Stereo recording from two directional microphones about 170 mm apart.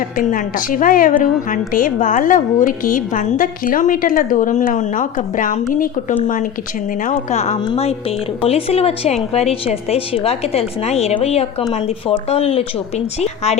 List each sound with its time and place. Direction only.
0.2 s a woman's voice: 50° left (ahead or behind)